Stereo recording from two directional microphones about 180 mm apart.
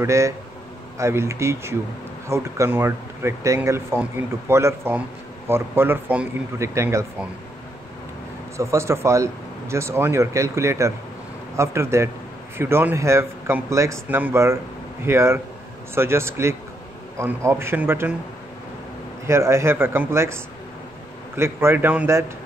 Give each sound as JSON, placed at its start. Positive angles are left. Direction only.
{"t": 0.0, "sound": "speech", "side_deg": -15}
{"t": 8.5, "sound": "speech", "side_deg": -15}
{"t": 19.2, "sound": "speech", "side_deg": -15}
{"t": 21.4, "sound": "speech", "side_deg": -15}